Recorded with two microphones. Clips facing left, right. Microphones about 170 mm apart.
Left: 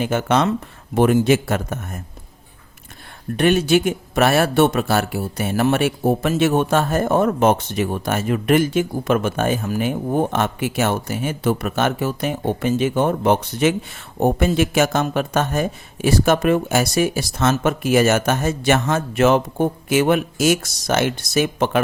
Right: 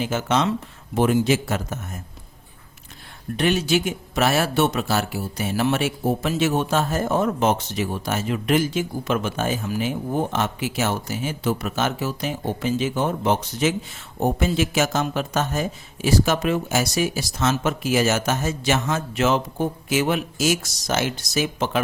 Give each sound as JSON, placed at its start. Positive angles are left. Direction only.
{"t": 0.0, "sound": "speech", "side_deg": 55}
{"t": 3.3, "sound": "speech", "side_deg": 55}